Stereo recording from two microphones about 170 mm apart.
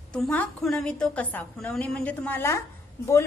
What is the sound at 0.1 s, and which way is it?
A woman's voice, 5° left (ahead or behind).